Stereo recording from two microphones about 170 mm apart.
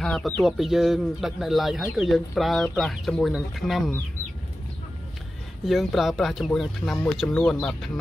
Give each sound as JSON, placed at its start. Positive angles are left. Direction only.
{"t": 0.0, "sound": "speech", "side_deg": 0}
{"t": 5.7, "sound": "speech", "side_deg": 0}